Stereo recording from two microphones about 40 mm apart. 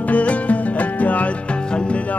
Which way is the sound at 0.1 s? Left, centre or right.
Left.